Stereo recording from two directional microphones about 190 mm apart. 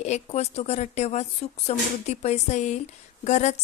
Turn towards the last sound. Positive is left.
turn(degrees=35)  # may be behind; listen again after turning